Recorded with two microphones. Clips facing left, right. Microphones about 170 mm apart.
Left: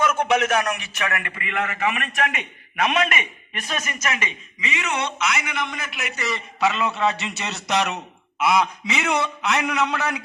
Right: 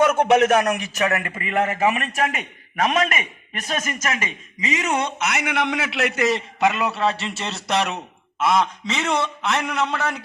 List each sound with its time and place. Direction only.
0.5 s a man's voice: 45° right (ahead or behind)
6.6 s a man's voice: 10° right (ahead or behind)